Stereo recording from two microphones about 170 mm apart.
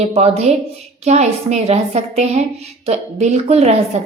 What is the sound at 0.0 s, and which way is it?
A woman's voice, 40° right (ahead or behind).